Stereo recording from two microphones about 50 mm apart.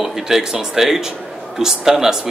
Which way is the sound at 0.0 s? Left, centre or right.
Centre.